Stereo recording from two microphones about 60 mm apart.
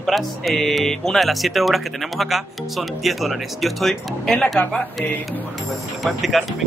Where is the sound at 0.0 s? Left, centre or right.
Centre.